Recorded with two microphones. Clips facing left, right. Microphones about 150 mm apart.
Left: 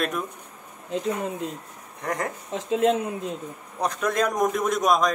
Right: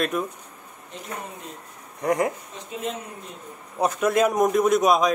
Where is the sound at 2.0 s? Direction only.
10° right (ahead or behind).